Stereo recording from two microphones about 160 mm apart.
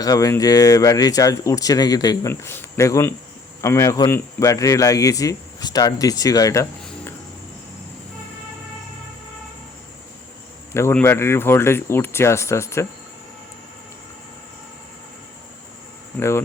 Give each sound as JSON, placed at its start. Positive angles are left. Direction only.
{"t": 0.0, "sound": "speech", "side_deg": 20}
{"t": 10.7, "sound": "speech", "side_deg": 15}